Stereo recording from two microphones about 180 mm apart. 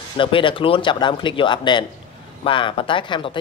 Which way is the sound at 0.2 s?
30° left (ahead or behind).